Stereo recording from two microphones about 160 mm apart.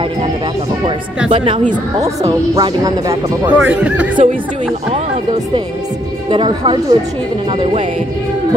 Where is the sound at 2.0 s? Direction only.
20° right (ahead or behind).